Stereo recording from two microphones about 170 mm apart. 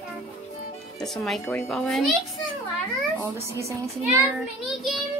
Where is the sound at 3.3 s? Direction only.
15° right (ahead or behind).